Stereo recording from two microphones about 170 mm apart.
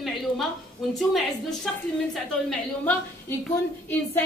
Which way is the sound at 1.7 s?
Centre (ahead or behind).